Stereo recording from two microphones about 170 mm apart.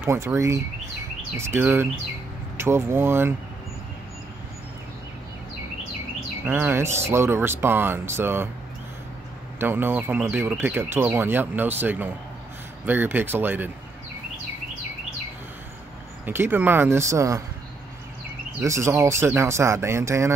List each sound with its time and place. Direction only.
0.0 s speech: 15° right (ahead or behind)
6.4 s speech: 10° right (ahead or behind)
9.6 s speech: 10° right (ahead or behind)
16.3 s speech: 10° right (ahead or behind)
18.6 s speech: 15° right (ahead or behind)